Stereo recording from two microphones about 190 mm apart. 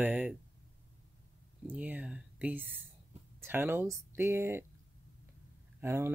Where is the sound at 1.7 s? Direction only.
5° right (ahead or behind).